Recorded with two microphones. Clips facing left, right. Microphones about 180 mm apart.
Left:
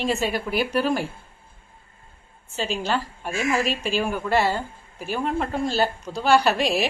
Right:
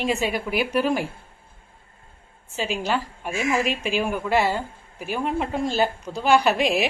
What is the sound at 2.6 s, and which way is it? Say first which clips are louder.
A woman's voice: even; 10° right (ahead or behind).